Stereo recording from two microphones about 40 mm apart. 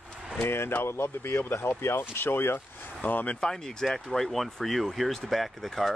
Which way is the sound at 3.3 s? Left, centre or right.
Centre.